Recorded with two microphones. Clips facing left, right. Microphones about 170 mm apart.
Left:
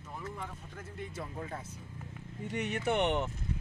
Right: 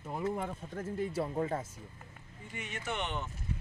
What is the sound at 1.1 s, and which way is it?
Speech, 35° right (ahead or behind).